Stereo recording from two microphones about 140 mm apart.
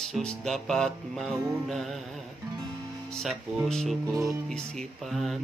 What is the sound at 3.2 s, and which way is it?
Music, centre (ahead or behind).